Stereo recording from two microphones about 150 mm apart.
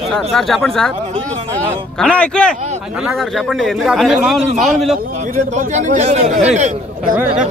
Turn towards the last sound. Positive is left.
turn(degrees=-50)  # may be behind; listen again after turning